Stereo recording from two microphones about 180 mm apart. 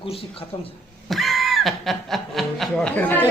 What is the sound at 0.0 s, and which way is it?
Speech, 30° left (ahead or behind).